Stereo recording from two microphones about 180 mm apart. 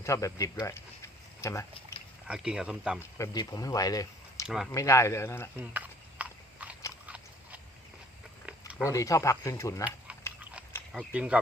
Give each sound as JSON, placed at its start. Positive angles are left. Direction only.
{"t": 0.0, "sound": "speech", "side_deg": 15}
{"t": 0.6, "sound": "a sound", "side_deg": 15}
{"t": 2.2, "sound": "speech", "side_deg": -5}
{"t": 3.0, "sound": "speech", "side_deg": 20}
{"t": 4.4, "sound": "speech", "side_deg": -5}
{"t": 4.7, "sound": "speech", "side_deg": 15}
{"t": 5.5, "sound": "a sound", "side_deg": -10}
{"t": 8.4, "sound": "chewing", "side_deg": -5}
{"t": 8.9, "sound": "speech", "side_deg": 20}
{"t": 10.9, "sound": "speech", "side_deg": -5}